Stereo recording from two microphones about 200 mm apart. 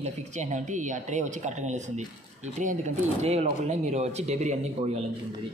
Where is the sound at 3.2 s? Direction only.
35° right (ahead or behind).